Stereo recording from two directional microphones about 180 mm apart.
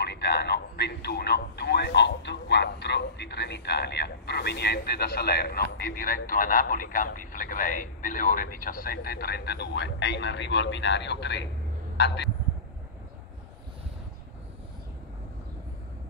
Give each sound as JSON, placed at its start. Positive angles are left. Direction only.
{"t": 0.0, "sound": "a man's voice", "side_deg": 65}